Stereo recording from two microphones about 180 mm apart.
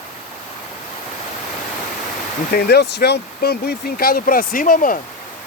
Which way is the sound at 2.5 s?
65° left (ahead or behind).